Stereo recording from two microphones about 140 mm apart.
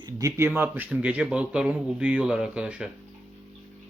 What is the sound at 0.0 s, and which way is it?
Speech, 25° right (ahead or behind).